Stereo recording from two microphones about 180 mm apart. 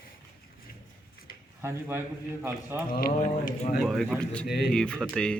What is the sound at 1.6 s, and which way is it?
A man's voice, 15° right (ahead or behind).